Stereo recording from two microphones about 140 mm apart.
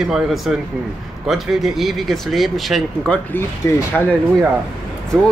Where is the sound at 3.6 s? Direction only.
20° left (ahead or behind).